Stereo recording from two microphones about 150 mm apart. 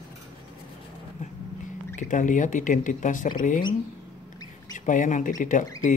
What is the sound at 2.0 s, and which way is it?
Speech, 60° left (ahead or behind).